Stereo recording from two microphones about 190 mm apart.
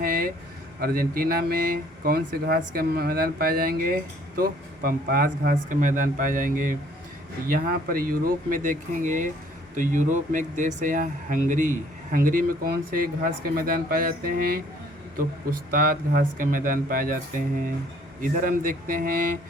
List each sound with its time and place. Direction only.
0.0 s a sound: 50° right (ahead or behind)
0.8 s speech: 50° right (ahead or behind)
18.2 s speech: 45° right (ahead or behind)